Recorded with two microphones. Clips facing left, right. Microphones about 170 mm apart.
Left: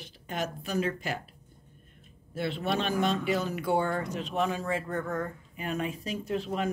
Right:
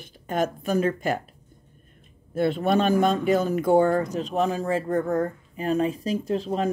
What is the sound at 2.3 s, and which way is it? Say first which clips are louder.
Speech: right 8 dB; 50° right (ahead or behind).